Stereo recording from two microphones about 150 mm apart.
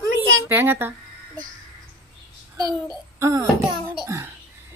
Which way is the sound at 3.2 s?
20° right (ahead or behind).